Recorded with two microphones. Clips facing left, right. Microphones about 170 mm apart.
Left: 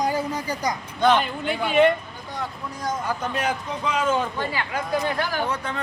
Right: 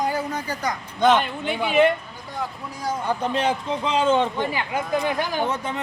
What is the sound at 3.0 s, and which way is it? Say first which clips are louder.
A man's voice: right 5 dB; 30° right (ahead or behind).